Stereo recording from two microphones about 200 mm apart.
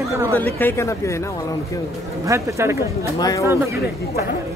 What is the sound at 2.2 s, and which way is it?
Speech, 15° right (ahead or behind).